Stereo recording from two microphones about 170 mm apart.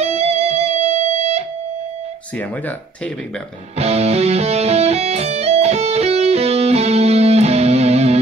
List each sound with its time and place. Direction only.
0.0 s music: 40° right (ahead or behind)
3.7 s music: 35° right (ahead or behind)